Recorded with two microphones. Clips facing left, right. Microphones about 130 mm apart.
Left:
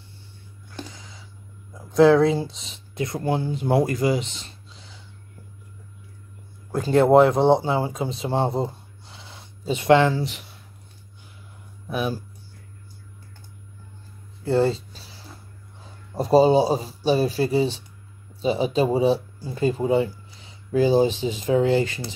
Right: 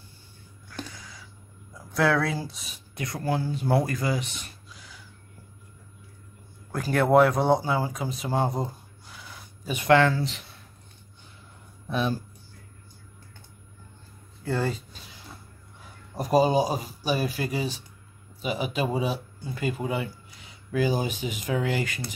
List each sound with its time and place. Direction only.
0.7 s a sound: 20° left (ahead or behind)
1.7 s speech: 20° left (ahead or behind)
6.7 s speech: 25° left (ahead or behind)
11.9 s speech: 10° left (ahead or behind)
14.4 s a sound: 25° left (ahead or behind)
15.8 s speech: 30° left (ahead or behind)